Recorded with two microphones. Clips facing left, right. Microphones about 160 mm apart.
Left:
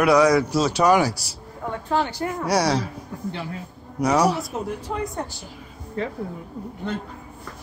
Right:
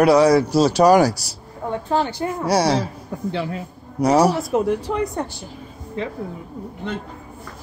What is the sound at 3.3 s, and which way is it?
Speech, 90° right.